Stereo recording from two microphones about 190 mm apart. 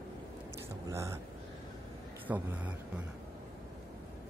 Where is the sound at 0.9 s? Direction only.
15° right (ahead or behind).